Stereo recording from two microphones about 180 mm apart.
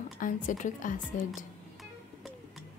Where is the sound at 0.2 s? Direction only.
45° left (ahead or behind).